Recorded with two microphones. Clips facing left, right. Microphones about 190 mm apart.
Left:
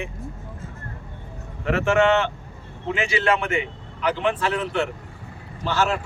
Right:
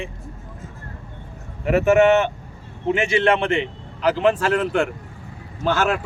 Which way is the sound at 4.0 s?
40° right (ahead or behind).